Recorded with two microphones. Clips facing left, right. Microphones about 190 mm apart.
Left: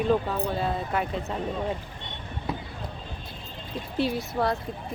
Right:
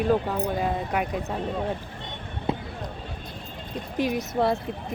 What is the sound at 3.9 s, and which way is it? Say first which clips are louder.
Speech: right 1 dB; 15° right (ahead or behind).